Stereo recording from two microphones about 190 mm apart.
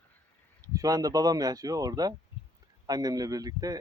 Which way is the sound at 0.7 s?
20° right (ahead or behind).